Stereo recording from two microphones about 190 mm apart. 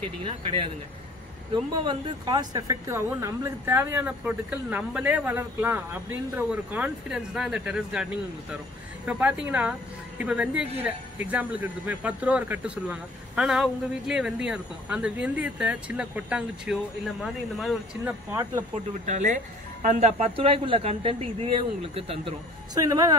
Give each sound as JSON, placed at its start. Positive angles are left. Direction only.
{"t": 0.2, "sound": "speech", "side_deg": -30}
{"t": 18.3, "sound": "speech", "side_deg": -15}
{"t": 19.0, "sound": "speech", "side_deg": -40}
{"t": 22.8, "sound": "speech", "side_deg": -20}